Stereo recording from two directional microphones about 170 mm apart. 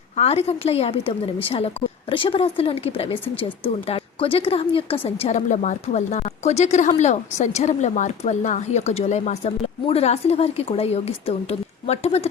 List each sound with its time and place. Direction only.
0.2 s a woman's voice: 35° left (ahead or behind)